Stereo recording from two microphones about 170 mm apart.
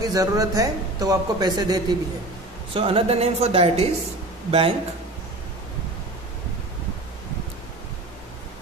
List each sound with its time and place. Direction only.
0.0 s a woman's voice: 20° right (ahead or behind)